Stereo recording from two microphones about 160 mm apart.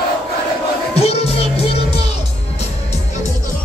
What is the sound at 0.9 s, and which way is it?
Music, 40° left (ahead or behind).